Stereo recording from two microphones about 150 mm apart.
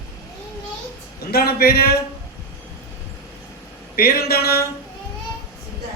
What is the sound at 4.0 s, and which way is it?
Speech, 90° left.